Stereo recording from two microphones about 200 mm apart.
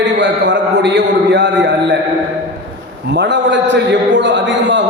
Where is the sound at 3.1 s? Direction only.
60° right (ahead or behind).